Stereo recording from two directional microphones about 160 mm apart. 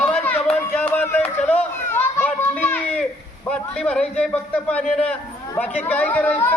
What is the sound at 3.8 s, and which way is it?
Speech, 5° left (ahead or behind).